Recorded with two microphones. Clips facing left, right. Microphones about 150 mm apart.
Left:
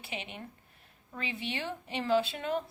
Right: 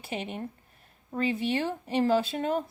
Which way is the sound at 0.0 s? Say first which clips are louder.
Right 7 dB; 40° right (ahead or behind).